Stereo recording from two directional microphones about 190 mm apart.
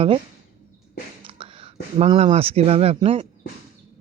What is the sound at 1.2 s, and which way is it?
A man's voice, 30° right (ahead or behind).